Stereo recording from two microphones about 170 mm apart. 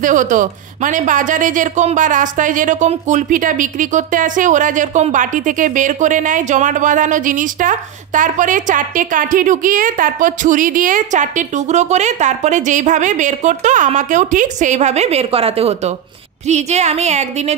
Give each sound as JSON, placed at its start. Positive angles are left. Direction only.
{"t": 0.0, "sound": "a woman's voice", "side_deg": -50}